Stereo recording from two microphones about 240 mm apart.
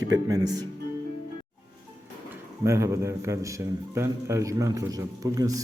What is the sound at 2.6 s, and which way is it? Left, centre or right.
A man's voice, centre.